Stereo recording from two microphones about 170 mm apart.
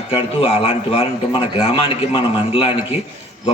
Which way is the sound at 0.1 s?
35° left (ahead or behind).